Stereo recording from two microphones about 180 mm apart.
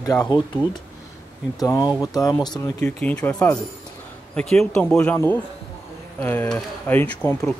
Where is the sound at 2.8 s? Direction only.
5° left (ahead or behind).